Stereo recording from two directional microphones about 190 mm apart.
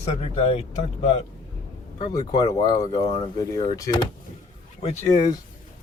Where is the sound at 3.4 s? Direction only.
20° left (ahead or behind).